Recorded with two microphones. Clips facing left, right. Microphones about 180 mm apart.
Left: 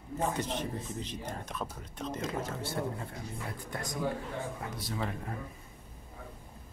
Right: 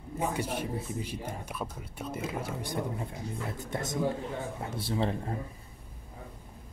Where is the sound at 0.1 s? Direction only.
10° right (ahead or behind); by 5.4 s 30° right (ahead or behind).